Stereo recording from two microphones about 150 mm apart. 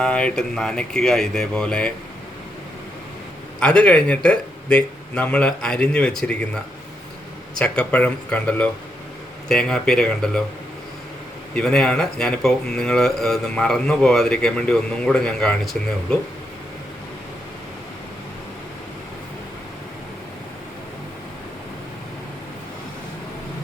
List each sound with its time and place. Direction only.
0.0 s speech: 5° left (ahead or behind)
3.6 s speech: 5° left (ahead or behind)
11.5 s speech: 5° left (ahead or behind)